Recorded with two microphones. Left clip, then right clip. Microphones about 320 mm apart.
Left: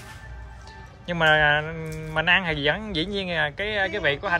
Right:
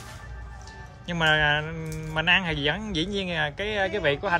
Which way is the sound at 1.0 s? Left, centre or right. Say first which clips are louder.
Left 3 dB; centre.